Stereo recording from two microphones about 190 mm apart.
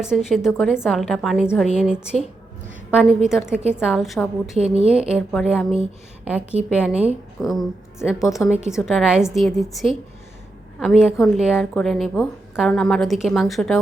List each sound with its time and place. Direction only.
0.0 s a woman's voice: 5° right (ahead or behind)
3.2 s a woman's voice: 5° right (ahead or behind)
8.2 s a woman's voice: 15° left (ahead or behind)
8.6 s a woman's voice: 5° right (ahead or behind)